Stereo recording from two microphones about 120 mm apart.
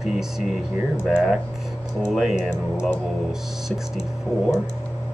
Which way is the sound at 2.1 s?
5° right (ahead or behind).